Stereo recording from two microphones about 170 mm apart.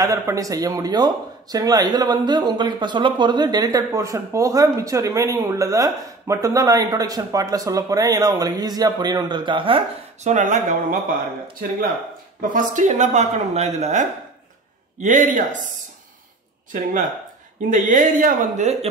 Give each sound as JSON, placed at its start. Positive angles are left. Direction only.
{"t": 0.0, "sound": "speech", "side_deg": -20}
{"t": 10.3, "sound": "speech", "side_deg": -45}
{"t": 12.4, "sound": "speech", "side_deg": -50}
{"t": 17.6, "sound": "speech", "side_deg": -50}